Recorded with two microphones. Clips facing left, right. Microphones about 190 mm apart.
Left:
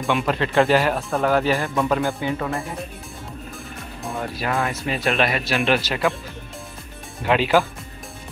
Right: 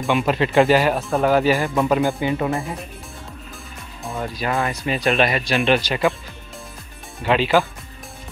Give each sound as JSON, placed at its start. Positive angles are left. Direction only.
{"t": 0.2, "sound": "speech", "side_deg": -15}
{"t": 1.9, "sound": "speech", "side_deg": -15}
{"t": 4.0, "sound": "speech", "side_deg": 0}
{"t": 7.2, "sound": "speech", "side_deg": 5}